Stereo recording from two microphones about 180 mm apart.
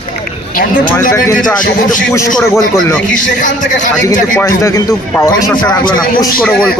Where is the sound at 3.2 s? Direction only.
45° left (ahead or behind).